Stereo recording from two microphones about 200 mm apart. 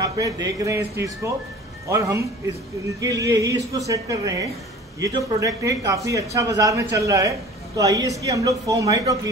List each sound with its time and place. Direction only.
0.0 s speech: 15° right (ahead or behind)